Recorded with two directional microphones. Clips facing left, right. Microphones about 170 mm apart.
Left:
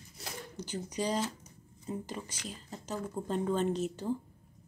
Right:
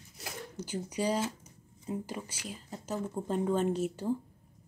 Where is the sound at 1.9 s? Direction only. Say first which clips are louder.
Right 2 dB; 10° right (ahead or behind).